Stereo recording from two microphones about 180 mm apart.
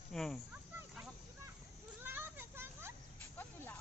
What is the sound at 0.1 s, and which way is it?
Speech, centre (ahead or behind).